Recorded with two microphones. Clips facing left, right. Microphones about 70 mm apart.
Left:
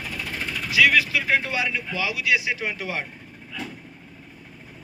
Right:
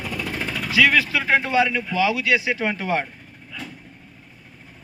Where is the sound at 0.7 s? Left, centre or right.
Right.